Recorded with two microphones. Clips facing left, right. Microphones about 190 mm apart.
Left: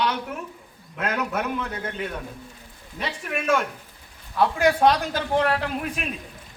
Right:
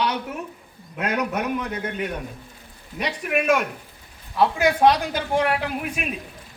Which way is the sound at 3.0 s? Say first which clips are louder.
Right 5 dB; 15° right (ahead or behind).